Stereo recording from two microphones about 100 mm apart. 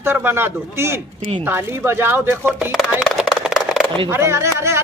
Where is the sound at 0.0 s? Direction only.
20° right (ahead or behind).